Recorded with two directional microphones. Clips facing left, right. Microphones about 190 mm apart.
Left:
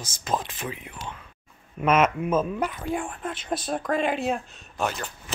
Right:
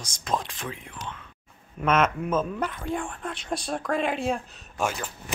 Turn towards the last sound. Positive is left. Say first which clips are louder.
# even
turn(degrees=-5)  # may be behind; listen again after turning